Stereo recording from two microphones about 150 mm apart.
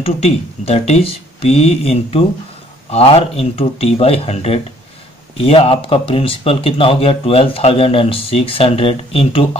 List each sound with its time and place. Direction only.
0.0 s speech: 40° left (ahead or behind)